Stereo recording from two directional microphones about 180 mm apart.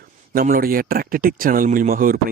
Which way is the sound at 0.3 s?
55° right (ahead or behind).